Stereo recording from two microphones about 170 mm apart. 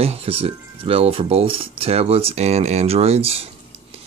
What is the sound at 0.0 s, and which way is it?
Speech, 35° right (ahead or behind).